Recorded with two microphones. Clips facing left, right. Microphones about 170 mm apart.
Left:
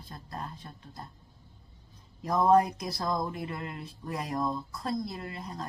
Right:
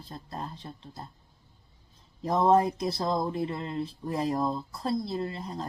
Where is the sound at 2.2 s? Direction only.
25° right (ahead or behind).